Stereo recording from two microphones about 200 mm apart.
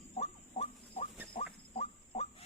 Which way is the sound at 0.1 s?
30° left (ahead or behind).